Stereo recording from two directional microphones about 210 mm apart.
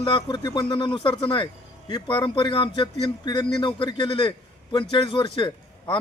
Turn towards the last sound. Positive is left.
turn(degrees=25)  # may be behind; listen again after turning